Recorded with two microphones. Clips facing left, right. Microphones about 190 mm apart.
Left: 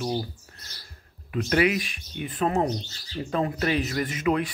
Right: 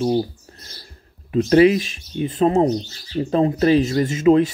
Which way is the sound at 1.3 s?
30° right (ahead or behind).